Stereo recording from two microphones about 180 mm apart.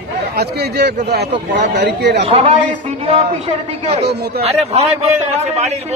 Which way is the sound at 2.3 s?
30° right (ahead or behind).